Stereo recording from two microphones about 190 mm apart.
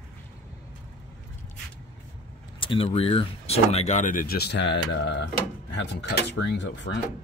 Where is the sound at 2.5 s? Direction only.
25° left (ahead or behind); by 7.0 s 65° left (ahead or behind).